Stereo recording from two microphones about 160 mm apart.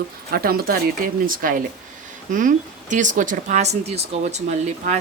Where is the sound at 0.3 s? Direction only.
70° right (ahead or behind).